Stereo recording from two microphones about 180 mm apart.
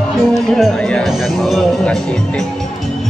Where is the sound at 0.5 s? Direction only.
5° left (ahead or behind).